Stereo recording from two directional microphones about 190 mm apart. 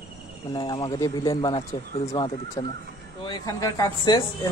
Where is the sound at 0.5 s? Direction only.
25° left (ahead or behind).